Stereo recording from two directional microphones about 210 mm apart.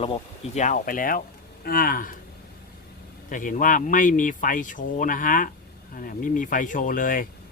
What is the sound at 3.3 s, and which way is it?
Speech, 40° left (ahead or behind).